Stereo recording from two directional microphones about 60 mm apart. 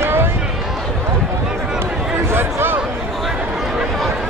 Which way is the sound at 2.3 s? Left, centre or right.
Right.